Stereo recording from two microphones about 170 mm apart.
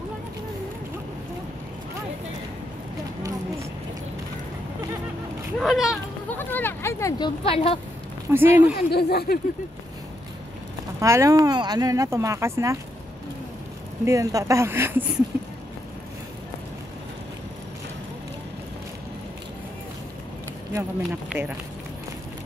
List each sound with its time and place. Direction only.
5.6 s speech: centre (ahead or behind)
6.3 s speech: 10° left (ahead or behind); by 7.8 s 35° left (ahead or behind)
8.3 s speech: 10° right (ahead or behind)
8.7 s speech: 65° left (ahead or behind)
11.0 s speech: 20° right (ahead or behind)
14.0 s speech: 20° right (ahead or behind)
20.7 s speech: 10° right (ahead or behind)